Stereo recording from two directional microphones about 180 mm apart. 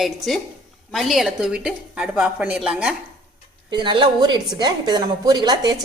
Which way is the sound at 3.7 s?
25° right (ahead or behind).